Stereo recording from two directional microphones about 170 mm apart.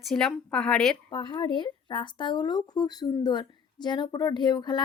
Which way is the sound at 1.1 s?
30° left (ahead or behind).